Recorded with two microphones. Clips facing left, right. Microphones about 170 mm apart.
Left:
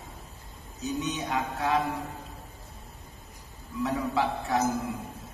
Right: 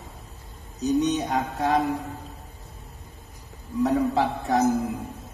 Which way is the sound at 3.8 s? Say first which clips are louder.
Right 5 dB; 40° right (ahead or behind).